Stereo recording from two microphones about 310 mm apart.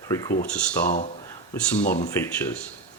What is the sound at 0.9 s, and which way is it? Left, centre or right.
Speech, left.